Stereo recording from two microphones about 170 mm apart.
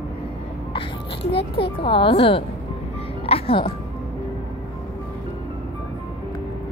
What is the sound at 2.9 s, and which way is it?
Music, 35° left (ahead or behind).